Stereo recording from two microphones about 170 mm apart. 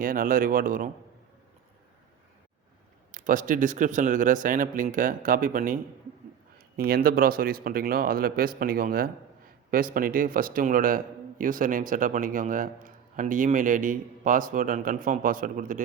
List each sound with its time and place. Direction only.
0.0 s speech: 55° right (ahead or behind)
3.1 s a man's voice: 50° right (ahead or behind)